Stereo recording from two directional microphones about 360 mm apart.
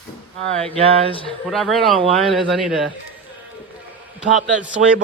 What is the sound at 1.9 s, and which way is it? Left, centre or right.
Speech, centre.